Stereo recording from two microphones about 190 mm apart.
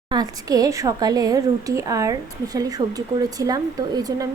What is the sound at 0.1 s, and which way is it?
A woman's voice, 20° right (ahead or behind).